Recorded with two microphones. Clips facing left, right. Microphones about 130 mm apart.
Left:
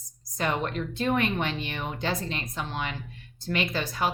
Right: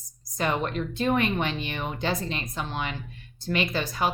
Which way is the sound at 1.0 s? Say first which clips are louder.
Right 1 dB; 20° right (ahead or behind).